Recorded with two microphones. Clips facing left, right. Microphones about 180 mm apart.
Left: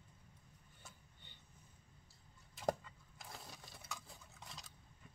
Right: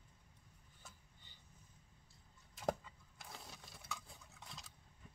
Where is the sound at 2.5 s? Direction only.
Centre (ahead or behind).